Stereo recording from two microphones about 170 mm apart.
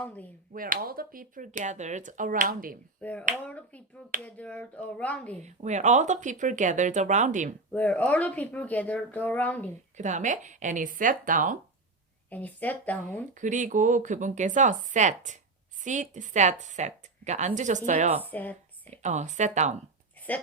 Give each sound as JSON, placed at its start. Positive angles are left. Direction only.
{"t": 0.0, "sound": "speech", "side_deg": 10}
{"t": 0.5, "sound": "a woman's voice", "side_deg": -55}
{"t": 3.0, "sound": "speech", "side_deg": 10}
{"t": 5.4, "sound": "a woman's voice", "side_deg": -45}
{"t": 7.7, "sound": "speech", "side_deg": 10}
{"t": 10.0, "sound": "a woman's voice", "side_deg": -45}
{"t": 12.3, "sound": "speech", "side_deg": 10}
{"t": 13.3, "sound": "a woman's voice", "side_deg": -45}
{"t": 18.3, "sound": "speech", "side_deg": 10}
{"t": 18.9, "sound": "a woman's voice", "side_deg": -45}